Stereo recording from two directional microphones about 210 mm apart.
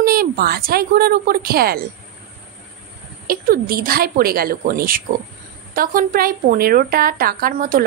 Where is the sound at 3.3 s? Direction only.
45° right (ahead or behind).